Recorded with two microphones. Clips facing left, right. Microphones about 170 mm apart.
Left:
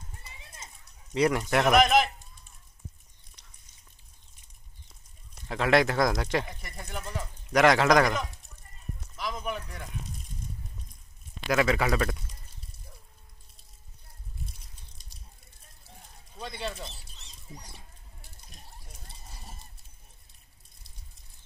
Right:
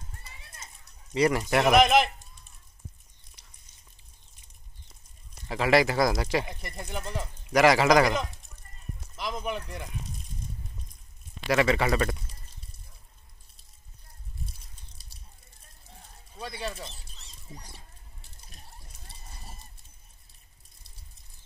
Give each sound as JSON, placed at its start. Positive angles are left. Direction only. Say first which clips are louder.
{"t": 0.2, "sound": "clip-clop", "louder": "left 1 dB", "side_deg": 15}
{"t": 1.1, "sound": "speech", "louder": "right 1 dB", "side_deg": 0}
{"t": 3.4, "sound": "a sound", "louder": "even", "side_deg": -5}
{"t": 5.3, "sound": "speech", "louder": "right 1 dB", "side_deg": -5}
{"t": 7.0, "sound": "speech", "louder": "right 2 dB", "side_deg": -25}
{"t": 7.4, "sound": "speech", "louder": "right 1 dB", "side_deg": -5}
{"t": 11.5, "sound": "speech", "louder": "right 1 dB", "side_deg": 0}
{"t": 16.3, "sound": "speech", "louder": "even", "side_deg": -10}
{"t": 18.5, "sound": "a sound", "louder": "left 1 dB", "side_deg": 0}